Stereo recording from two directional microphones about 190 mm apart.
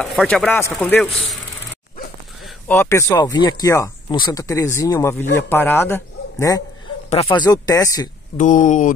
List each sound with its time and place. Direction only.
0.0 s speech: centre (ahead or behind)
0.5 s speech: 10° left (ahead or behind)
2.7 s speech: 15° left (ahead or behind)
8.4 s speech: 40° left (ahead or behind)